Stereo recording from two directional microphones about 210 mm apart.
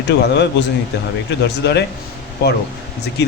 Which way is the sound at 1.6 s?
55° left (ahead or behind).